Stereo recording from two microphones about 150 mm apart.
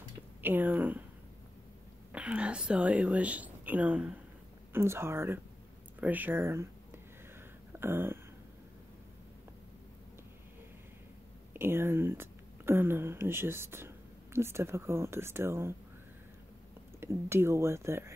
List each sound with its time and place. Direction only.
0.4 s speech: 15° right (ahead or behind)
2.1 s speech: 10° right (ahead or behind)
7.7 s a sound: 15° right (ahead or behind)
11.5 s speech: 15° right (ahead or behind)
17.0 s speech: 15° right (ahead or behind)